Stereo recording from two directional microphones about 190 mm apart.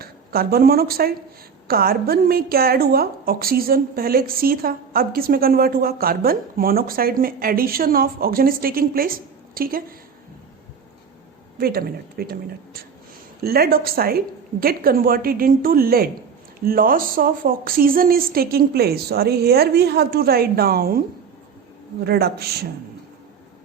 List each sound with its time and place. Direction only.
0.0 s a woman's voice: 55° right (ahead or behind)
11.5 s a woman's voice: 50° right (ahead or behind)
22.0 s speech: 55° right (ahead or behind)